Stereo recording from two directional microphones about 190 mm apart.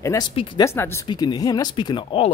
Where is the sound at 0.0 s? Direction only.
15° left (ahead or behind).